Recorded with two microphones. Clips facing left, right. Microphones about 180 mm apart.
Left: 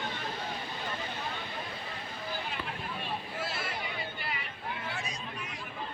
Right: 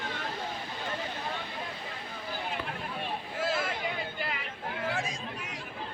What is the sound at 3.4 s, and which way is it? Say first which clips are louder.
Boat: right 10 dB; 90° right.